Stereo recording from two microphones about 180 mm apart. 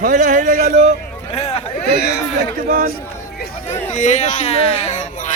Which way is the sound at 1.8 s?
65° left (ahead or behind).